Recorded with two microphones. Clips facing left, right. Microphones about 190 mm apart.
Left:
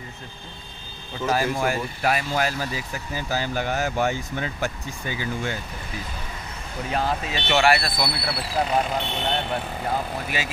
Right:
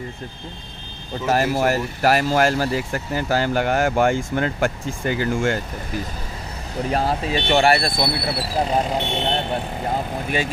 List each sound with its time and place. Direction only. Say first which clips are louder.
1.4 s speech: right 4 dB; 70° right (ahead or behind); by 5.6 s 50° right (ahead or behind)
6.9 s speech: right 4 dB; 35° right (ahead or behind)